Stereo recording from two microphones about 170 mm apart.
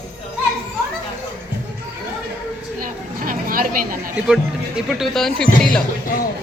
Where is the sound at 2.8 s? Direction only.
55° right (ahead or behind).